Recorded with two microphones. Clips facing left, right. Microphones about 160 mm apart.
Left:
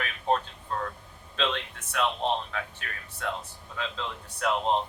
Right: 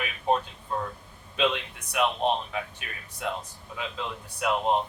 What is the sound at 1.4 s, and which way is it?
Speech, 15° right (ahead or behind).